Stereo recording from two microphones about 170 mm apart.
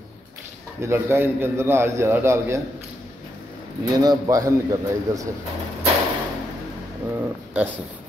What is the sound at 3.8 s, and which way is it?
A man's voice, 20° right (ahead or behind).